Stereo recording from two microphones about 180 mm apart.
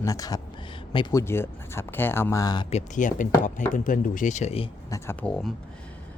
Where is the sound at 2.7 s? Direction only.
40° left (ahead or behind).